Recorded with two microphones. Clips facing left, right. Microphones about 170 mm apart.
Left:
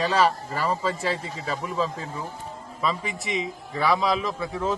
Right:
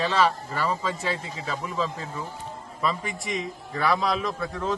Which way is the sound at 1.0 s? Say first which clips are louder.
Left 2 dB; centre (ahead or behind).